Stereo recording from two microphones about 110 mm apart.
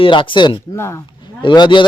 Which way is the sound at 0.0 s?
50° left (ahead or behind).